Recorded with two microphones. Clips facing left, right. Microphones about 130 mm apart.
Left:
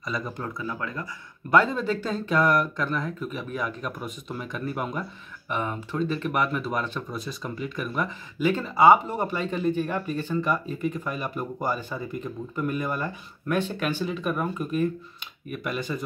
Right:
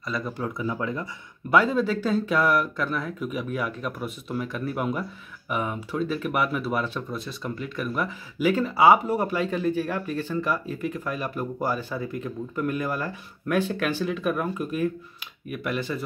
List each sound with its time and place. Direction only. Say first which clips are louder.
0.0 s speech: right 2 dB; centre (ahead or behind)
0.6 s speech: right 4 dB; 20° right (ahead or behind)
1.5 s speech: right 1 dB; 5° right (ahead or behind)